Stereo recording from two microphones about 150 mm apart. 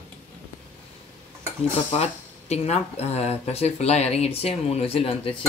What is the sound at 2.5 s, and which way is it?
Speech, 45° left (ahead or behind).